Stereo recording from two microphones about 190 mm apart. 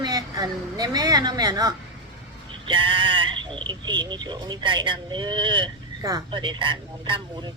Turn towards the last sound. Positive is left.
turn(degrees=-25)  # may be behind; listen again after turning